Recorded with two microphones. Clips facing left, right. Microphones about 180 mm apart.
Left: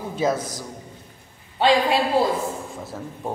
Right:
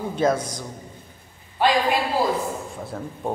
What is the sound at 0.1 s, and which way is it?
Speech, 5° left (ahead or behind).